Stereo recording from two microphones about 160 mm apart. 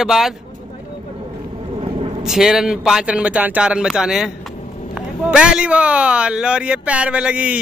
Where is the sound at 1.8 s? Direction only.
35° right (ahead or behind).